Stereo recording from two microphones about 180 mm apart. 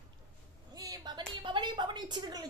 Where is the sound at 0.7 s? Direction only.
20° right (ahead or behind).